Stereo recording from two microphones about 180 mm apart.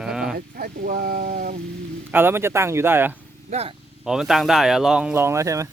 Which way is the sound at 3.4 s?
35° right (ahead or behind).